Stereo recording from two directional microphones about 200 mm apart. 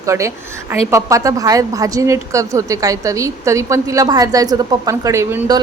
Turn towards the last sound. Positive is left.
turn(degrees=-15)  # may be behind; listen again after turning